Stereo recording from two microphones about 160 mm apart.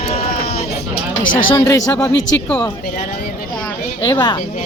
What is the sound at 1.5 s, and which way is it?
Speech, 20° left (ahead or behind).